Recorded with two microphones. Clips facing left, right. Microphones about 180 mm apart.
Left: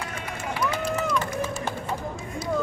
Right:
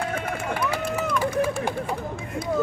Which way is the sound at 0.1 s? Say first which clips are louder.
Right 5 dB; 55° right (ahead or behind).